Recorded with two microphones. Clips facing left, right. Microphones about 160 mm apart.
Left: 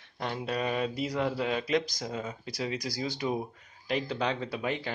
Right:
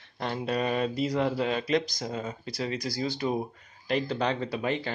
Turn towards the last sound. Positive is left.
turn(degrees=5)  # may be behind; listen again after turning